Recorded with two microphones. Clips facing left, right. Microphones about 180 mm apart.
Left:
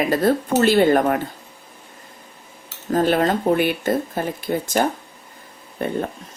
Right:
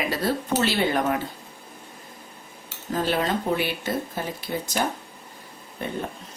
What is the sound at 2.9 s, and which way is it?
A woman's voice, 50° left (ahead or behind).